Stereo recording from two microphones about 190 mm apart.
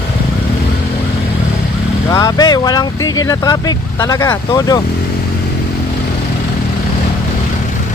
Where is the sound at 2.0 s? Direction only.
20° left (ahead or behind).